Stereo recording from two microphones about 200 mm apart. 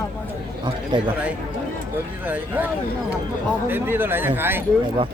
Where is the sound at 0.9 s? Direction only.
25° right (ahead or behind).